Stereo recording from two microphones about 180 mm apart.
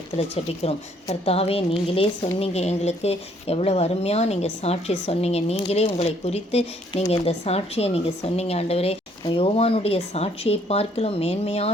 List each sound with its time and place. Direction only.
0.2 s a woman's voice: 35° left (ahead or behind)